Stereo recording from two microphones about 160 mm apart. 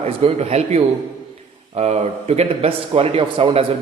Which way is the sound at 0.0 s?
40° right (ahead or behind).